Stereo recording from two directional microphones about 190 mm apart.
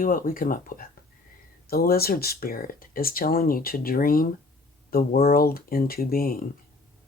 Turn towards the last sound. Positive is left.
turn(degrees=50)  # may be behind; listen again after turning